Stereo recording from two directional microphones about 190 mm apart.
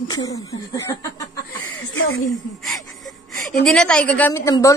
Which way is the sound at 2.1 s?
90° left.